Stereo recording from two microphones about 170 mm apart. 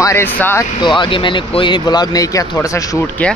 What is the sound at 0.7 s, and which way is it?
Speech, 30° left (ahead or behind).